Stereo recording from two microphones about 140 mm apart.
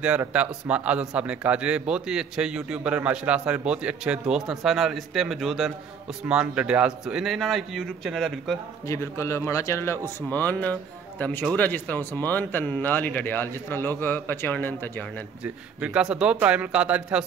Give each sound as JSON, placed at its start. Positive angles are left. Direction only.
{"t": 0.0, "sound": "a man's voice", "side_deg": -10}
{"t": 8.8, "sound": "a man's voice", "side_deg": 20}
{"t": 15.4, "sound": "a man's voice", "side_deg": -10}